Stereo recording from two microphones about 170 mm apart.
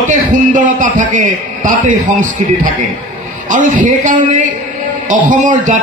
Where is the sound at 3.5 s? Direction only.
50° right (ahead or behind).